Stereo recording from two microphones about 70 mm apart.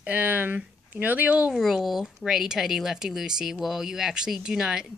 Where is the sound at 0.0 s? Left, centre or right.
Right.